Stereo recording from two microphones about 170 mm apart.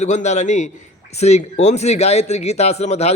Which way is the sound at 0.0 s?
45° left (ahead or behind).